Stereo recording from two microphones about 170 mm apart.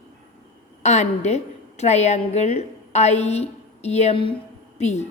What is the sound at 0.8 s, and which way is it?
A woman's voice, 40° left (ahead or behind).